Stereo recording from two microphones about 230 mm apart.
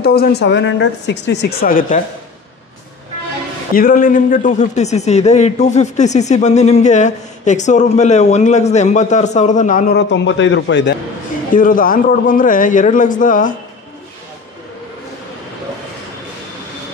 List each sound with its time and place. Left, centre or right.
0.0 s speech: left
3.7 s speech: left
11.5 s speech: left